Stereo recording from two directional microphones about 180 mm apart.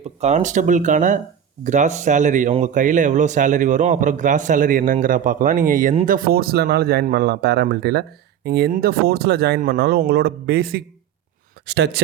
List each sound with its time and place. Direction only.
0.2 s a man's voice: 40° right (ahead or behind)
5.9 s speech: 35° right (ahead or behind)
6.1 s speech: 55° right (ahead or behind)
11.6 s speech: 70° right (ahead or behind)